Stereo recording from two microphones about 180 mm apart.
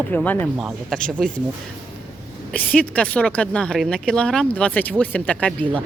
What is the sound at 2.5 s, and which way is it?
Speech, 5° left (ahead or behind).